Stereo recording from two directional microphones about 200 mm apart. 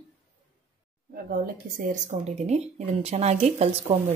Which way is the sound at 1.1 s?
45° right (ahead or behind).